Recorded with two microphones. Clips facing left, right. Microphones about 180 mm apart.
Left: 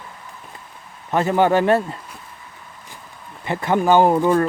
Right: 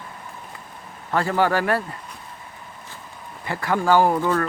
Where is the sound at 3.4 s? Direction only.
20° left (ahead or behind).